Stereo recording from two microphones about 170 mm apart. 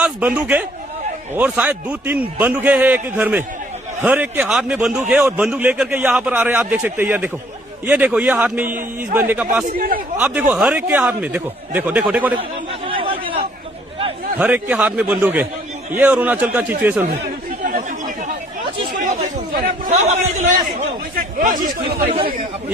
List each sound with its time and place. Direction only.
0.0 s a man's voice: 10° right (ahead or behind)
4.9 s a man's voice: 15° right (ahead or behind)
9.6 s a man's voice: 60° right (ahead or behind)
10.2 s a man's voice: 10° right (ahead or behind)
12.8 s chatter: 30° right (ahead or behind)
14.3 s a man's voice: 10° right (ahead or behind)
17.6 s chatter: 50° right (ahead or behind)
19.9 s a man's voice: 40° right (ahead or behind)
22.0 s speech: 30° right (ahead or behind)